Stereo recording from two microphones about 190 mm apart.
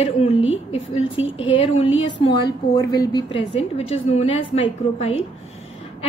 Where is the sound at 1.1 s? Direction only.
90° left.